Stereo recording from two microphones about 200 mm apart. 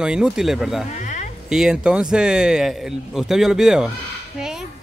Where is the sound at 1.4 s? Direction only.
5° right (ahead or behind).